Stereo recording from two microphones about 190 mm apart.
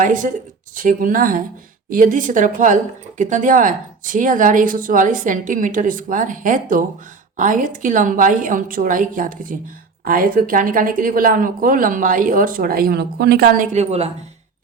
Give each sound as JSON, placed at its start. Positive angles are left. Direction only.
{"t": 0.0, "sound": "speech", "side_deg": -40}